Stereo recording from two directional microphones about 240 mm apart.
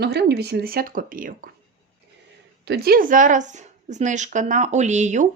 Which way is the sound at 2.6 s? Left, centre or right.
Right.